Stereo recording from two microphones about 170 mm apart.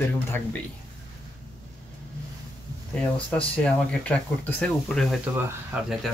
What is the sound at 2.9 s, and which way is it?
Speech, 5° left (ahead or behind).